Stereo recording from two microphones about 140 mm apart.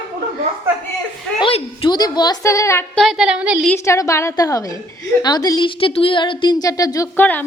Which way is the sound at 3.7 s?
20° left (ahead or behind).